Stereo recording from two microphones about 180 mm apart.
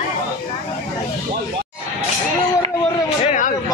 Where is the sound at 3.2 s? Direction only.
45° left (ahead or behind).